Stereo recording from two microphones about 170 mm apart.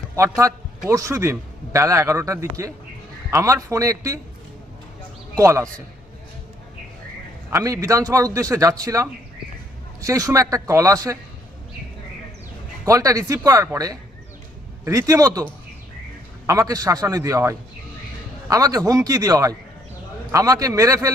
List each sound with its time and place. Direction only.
0.2 s a man's voice: 20° right (ahead or behind)
5.4 s a man's voice: 15° right (ahead or behind)
7.5 s a man's voice: 20° right (ahead or behind)
12.8 s a man's voice: 20° right (ahead or behind)
14.8 s a man's voice: 20° right (ahead or behind)
16.5 s a man's voice: 20° right (ahead or behind)